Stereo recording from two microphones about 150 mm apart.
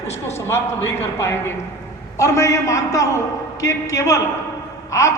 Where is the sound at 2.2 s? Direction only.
20° left (ahead or behind).